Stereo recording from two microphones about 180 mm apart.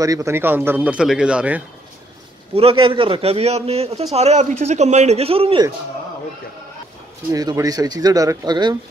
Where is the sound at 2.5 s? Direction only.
30° right (ahead or behind).